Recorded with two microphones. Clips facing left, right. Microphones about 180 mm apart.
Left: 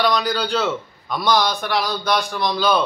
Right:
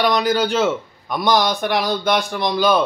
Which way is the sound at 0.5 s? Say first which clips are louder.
Right 3 dB; 20° right (ahead or behind).